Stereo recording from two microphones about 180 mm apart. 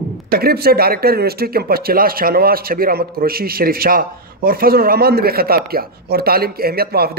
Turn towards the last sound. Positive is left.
turn(degrees=-60)  # may be behind; listen again after turning